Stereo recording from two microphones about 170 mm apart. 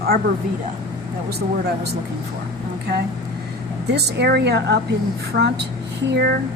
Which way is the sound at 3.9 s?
75° right (ahead or behind).